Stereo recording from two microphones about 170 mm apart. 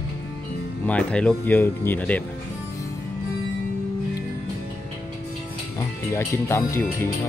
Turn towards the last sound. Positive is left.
turn(degrees=15)  # may be behind; listen again after turning